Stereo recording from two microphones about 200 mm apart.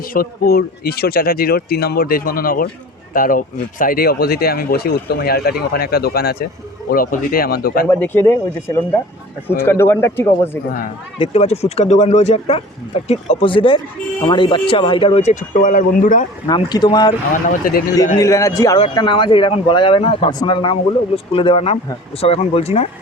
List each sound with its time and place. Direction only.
0.1 s speech: 50° left (ahead or behind)
7.9 s speech: 10° left (ahead or behind)
11.2 s speech: 30° left (ahead or behind)
16.5 s speech: 20° left (ahead or behind)
17.3 s speech: 45° left (ahead or behind)
18.2 s speech: 15° left (ahead or behind); by 22.9 s 30° left (ahead or behind)